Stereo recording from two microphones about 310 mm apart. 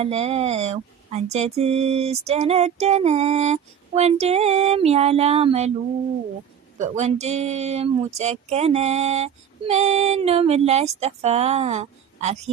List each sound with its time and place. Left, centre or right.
0.0 s speech: centre
6.7 s speech: right